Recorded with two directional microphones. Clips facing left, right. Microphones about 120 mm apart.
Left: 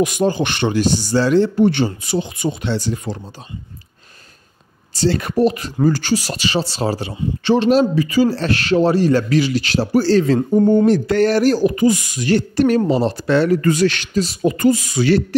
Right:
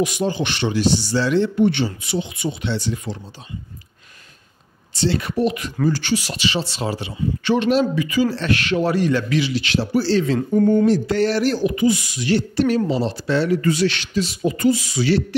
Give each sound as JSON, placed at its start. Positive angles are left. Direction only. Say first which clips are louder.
{"t": 0.0, "sound": "speech", "louder": "left 4 dB", "side_deg": 50}
{"t": 4.9, "sound": "speech", "louder": "left 3 dB", "side_deg": 45}
{"t": 10.9, "sound": "speech", "louder": "left 3 dB", "side_deg": 55}
{"t": 14.4, "sound": "speech", "louder": "left 3 dB", "side_deg": 55}